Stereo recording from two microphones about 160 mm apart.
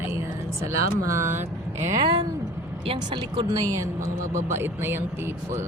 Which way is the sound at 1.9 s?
25° right (ahead or behind).